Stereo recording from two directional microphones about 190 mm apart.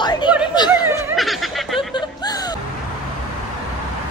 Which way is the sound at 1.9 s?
20° left (ahead or behind).